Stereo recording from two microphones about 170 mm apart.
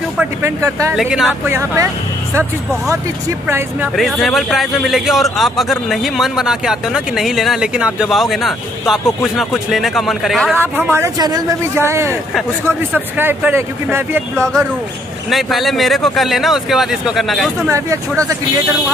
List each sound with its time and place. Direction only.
0.2 s speech: 15° right (ahead or behind)
0.9 s speech: centre (ahead or behind)
1.5 s speech: 15° right (ahead or behind)
3.4 s speech: 15° right (ahead or behind)
3.9 s speech: centre (ahead or behind)
10.5 s speech: 10° right (ahead or behind)
14.3 s speech: 5° left (ahead or behind)
17.6 s speech: 20° right (ahead or behind)